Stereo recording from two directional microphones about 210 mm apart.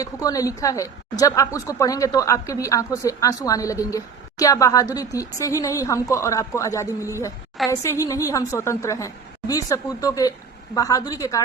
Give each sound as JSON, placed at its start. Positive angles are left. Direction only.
{"t": 0.0, "sound": "a woman's voice", "side_deg": 15}